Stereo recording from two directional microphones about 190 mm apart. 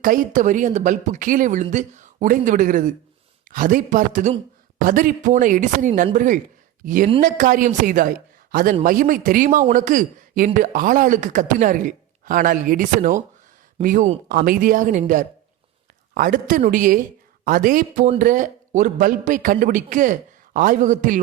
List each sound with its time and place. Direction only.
0.0 s speech: 45° right (ahead or behind)